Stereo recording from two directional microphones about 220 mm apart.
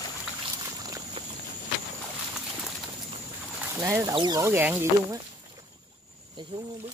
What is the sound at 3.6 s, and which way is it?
Speech, 10° right (ahead or behind).